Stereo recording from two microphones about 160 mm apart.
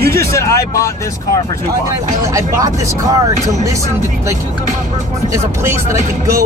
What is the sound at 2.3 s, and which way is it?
Speech, 20° right (ahead or behind).